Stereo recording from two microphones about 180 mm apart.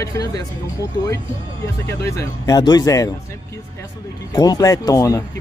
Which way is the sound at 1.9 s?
15° left (ahead or behind).